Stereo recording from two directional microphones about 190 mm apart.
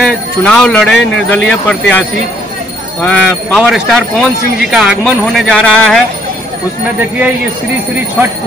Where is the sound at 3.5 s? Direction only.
Centre (ahead or behind).